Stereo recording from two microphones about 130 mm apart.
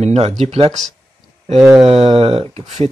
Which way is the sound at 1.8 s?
45° right (ahead or behind).